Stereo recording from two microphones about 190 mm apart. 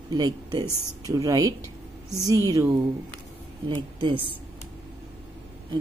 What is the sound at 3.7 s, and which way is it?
Speech, 25° right (ahead or behind).